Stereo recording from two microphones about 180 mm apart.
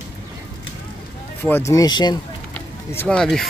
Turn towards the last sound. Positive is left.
turn(degrees=0)  # may be behind; listen again after turning